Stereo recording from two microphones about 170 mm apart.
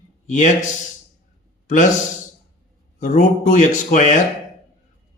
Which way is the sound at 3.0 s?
50° left (ahead or behind).